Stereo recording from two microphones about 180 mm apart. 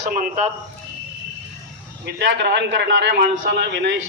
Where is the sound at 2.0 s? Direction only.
70° right (ahead or behind).